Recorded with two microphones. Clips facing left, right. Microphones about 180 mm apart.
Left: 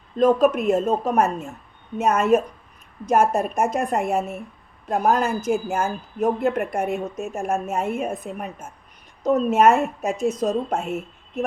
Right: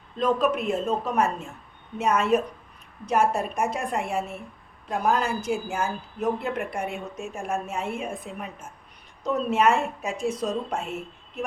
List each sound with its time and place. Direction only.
0.2 s speech: 45° left (ahead or behind)